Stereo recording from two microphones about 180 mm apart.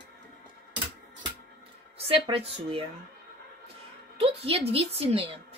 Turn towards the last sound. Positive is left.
turn(degrees=-30)  # may be behind; listen again after turning